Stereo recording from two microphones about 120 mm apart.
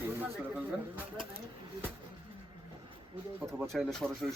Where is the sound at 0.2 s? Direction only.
15° right (ahead or behind).